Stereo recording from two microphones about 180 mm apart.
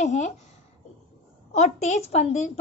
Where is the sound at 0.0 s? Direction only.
40° left (ahead or behind).